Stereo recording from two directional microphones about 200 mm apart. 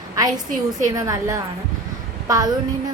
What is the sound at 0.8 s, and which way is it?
Speech, 15° right (ahead or behind).